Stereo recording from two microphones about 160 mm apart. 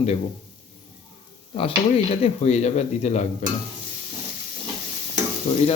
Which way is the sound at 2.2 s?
40° left (ahead or behind).